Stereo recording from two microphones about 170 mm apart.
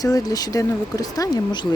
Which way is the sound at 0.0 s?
20° left (ahead or behind).